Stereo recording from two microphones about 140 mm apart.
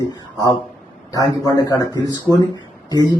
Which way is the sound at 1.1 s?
25° left (ahead or behind).